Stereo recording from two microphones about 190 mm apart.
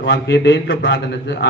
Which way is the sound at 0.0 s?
65° left (ahead or behind).